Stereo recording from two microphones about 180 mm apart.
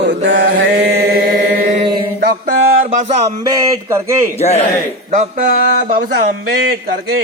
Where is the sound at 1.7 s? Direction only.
30° right (ahead or behind).